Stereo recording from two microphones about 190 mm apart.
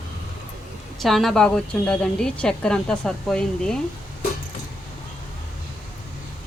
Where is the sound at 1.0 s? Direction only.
Centre (ahead or behind).